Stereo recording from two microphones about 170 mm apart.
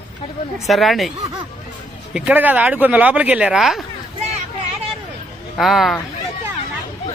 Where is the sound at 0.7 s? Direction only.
Centre (ahead or behind).